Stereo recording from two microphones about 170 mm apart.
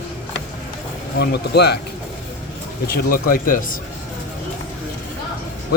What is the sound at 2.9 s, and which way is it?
Speech, 60° left (ahead or behind).